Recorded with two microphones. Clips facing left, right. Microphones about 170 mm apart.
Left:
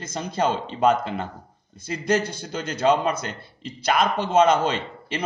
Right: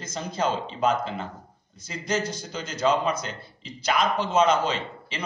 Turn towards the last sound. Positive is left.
turn(degrees=60)  # may be behind; listen again after turning